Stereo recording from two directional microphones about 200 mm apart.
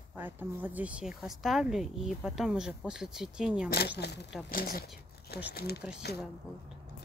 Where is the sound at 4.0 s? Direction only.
55° left (ahead or behind).